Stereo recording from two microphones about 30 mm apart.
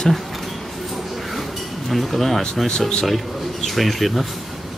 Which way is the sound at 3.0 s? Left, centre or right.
Centre.